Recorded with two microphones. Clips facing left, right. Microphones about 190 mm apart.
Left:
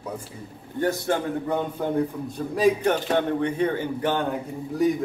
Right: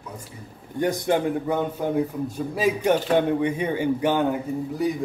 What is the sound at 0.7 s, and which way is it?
A man's voice, 15° right (ahead or behind).